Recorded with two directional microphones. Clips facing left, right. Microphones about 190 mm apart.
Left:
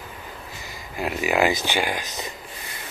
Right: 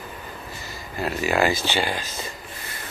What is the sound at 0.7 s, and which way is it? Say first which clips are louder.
Speech: even; 15° left (ahead or behind).